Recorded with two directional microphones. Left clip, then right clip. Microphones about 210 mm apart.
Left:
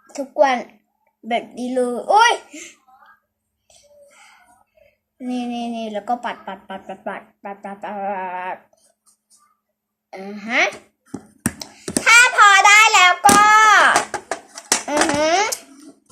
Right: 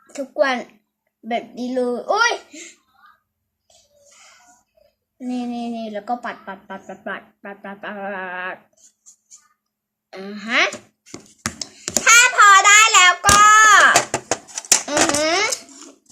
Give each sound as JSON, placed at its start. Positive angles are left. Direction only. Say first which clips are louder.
{"t": 0.3, "sound": "speech", "louder": "left 3 dB", "side_deg": -10}
{"t": 5.1, "sound": "speech", "louder": "left 1 dB", "side_deg": -5}
{"t": 10.1, "sound": "speech", "louder": "right 1 dB", "side_deg": -5}
{"t": 11.6, "sound": "child singing", "louder": "right 1 dB", "side_deg": -10}
{"t": 14.8, "sound": "a sound", "louder": "left 3 dB", "side_deg": -15}